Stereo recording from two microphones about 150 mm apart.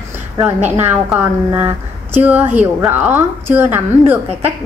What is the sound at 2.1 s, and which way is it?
A woman's voice, 10° right (ahead or behind).